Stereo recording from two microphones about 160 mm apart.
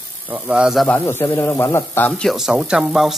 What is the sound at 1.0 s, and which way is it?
A man's voice, 15° left (ahead or behind).